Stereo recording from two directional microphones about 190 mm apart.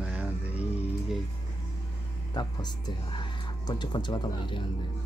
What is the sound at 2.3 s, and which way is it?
Speech, 20° left (ahead or behind).